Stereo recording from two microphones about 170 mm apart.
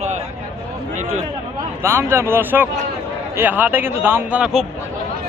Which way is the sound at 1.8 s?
15° right (ahead or behind).